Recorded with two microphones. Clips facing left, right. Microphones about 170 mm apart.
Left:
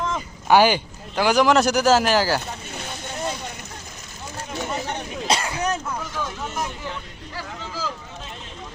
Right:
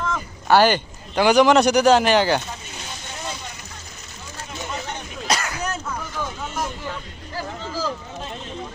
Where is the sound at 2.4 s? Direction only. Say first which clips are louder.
Left 2 dB; 60° left (ahead or behind).